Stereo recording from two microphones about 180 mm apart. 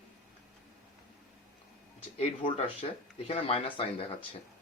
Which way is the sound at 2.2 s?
35° left (ahead or behind).